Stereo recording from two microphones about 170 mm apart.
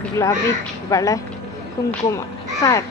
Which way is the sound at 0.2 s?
15° left (ahead or behind).